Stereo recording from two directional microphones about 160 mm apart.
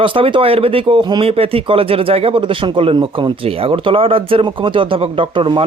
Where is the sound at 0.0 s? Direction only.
30° right (ahead or behind).